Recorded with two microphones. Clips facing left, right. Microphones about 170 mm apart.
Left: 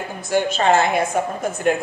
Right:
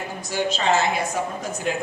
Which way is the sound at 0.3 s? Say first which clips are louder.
Left 5 dB; 55° left (ahead or behind).